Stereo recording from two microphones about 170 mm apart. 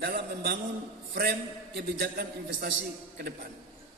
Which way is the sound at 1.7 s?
65° right (ahead or behind).